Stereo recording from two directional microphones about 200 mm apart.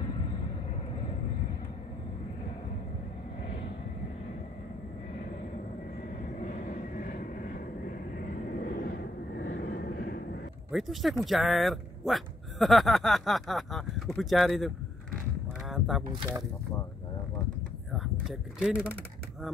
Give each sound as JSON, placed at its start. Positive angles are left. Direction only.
{"t": 6.4, "sound": "vehicle", "side_deg": 40}
{"t": 10.7, "sound": "speech", "side_deg": 0}
{"t": 16.1, "sound": "speech", "side_deg": -20}
{"t": 17.9, "sound": "speech", "side_deg": 0}